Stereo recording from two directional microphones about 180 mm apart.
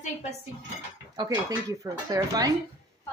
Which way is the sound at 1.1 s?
20° right (ahead or behind).